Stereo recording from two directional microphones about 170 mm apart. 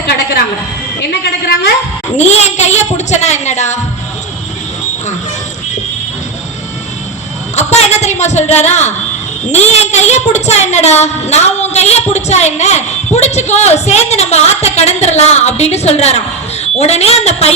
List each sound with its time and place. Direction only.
2.1 s speech: 40° left (ahead or behind)
7.5 s speech: 40° left (ahead or behind)